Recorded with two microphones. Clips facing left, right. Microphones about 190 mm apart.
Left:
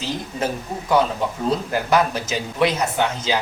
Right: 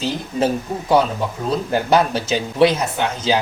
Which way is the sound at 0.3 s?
30° right (ahead or behind).